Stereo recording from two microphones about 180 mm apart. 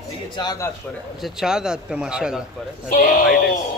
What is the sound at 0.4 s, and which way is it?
Speech, 20° left (ahead or behind).